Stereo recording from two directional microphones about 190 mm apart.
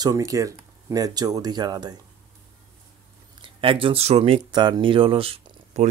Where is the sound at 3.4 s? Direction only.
30° right (ahead or behind).